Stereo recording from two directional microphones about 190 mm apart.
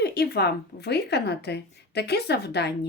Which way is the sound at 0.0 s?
60° left (ahead or behind).